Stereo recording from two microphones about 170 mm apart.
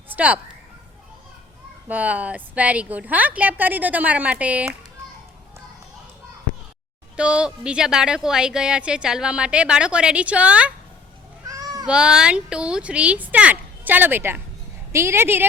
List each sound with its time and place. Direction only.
0.1 s a sound: 10° right (ahead or behind)
1.9 s a woman's voice: 10° right (ahead or behind)
7.2 s a woman's voice: 5° right (ahead or behind)
11.4 s cat: 20° right (ahead or behind)
11.9 s a woman's voice: 5° right (ahead or behind)